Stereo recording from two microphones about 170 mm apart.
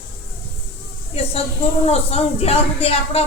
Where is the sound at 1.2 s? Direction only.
35° left (ahead or behind).